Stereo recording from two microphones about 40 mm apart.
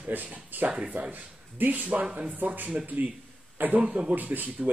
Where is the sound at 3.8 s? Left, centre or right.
Right.